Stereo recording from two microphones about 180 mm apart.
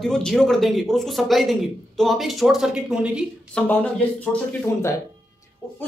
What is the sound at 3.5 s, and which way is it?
Speech, 10° left (ahead or behind).